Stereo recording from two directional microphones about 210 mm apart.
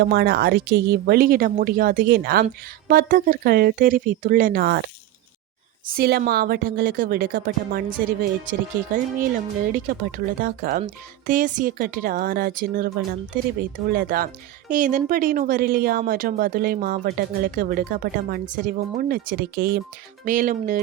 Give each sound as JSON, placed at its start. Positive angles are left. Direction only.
{"t": 0.0, "sound": "a woman's voice", "side_deg": -50}
{"t": 9.7, "sound": "a woman's voice", "side_deg": -40}